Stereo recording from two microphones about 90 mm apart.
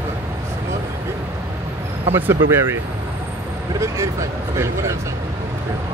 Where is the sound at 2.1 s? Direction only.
25° right (ahead or behind).